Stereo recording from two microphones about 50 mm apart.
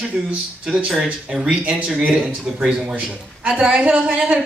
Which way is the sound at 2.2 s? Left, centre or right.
Centre.